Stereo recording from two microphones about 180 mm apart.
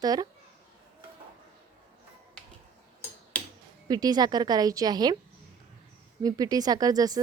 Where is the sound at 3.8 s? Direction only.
20° right (ahead or behind).